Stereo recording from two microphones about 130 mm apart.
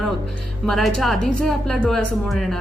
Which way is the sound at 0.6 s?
Centre (ahead or behind).